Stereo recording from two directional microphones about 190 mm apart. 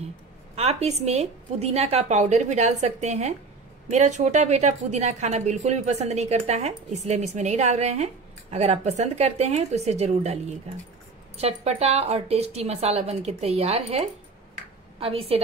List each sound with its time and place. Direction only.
0.6 s a woman's voice: 35° right (ahead or behind)